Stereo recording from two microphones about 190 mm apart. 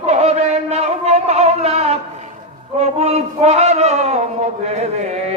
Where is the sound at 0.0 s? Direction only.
35° right (ahead or behind).